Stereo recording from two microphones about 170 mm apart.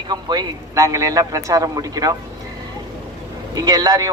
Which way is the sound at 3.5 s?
20° right (ahead or behind).